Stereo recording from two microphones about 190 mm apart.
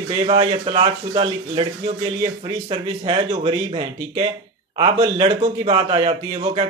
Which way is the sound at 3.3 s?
30° right (ahead or behind).